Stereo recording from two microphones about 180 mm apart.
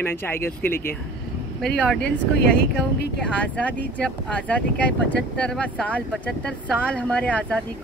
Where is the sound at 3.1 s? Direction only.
5° left (ahead or behind).